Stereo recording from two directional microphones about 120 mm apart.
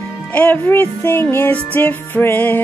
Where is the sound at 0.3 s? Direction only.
15° left (ahead or behind).